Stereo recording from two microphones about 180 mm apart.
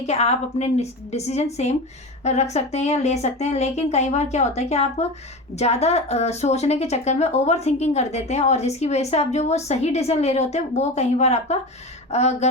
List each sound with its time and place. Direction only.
0.0 s speech: 35° left (ahead or behind)